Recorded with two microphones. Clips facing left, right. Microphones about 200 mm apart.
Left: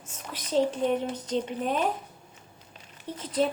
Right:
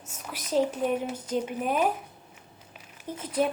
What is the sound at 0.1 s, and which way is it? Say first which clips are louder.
Speech: even; 10° right (ahead or behind).